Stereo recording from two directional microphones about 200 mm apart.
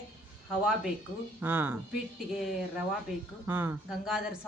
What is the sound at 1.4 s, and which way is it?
A man's voice, 10° right (ahead or behind).